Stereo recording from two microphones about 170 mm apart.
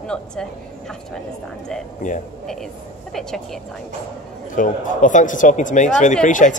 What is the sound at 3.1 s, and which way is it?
Speech, centre (ahead or behind).